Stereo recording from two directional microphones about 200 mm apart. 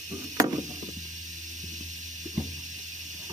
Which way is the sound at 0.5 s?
40° right (ahead or behind).